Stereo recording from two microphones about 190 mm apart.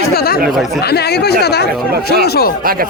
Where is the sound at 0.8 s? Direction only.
60° left (ahead or behind).